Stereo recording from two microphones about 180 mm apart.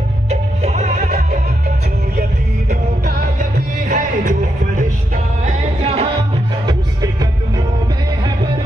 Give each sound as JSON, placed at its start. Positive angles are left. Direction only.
{"t": 0.3, "sound": "music", "side_deg": -35}
{"t": 3.9, "sound": "music", "side_deg": -45}
{"t": 6.6, "sound": "music", "side_deg": -25}